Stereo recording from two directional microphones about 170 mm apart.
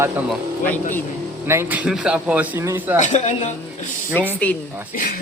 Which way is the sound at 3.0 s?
45° left (ahead or behind).